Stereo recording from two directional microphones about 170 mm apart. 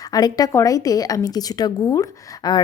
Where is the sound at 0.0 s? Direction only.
20° left (ahead or behind).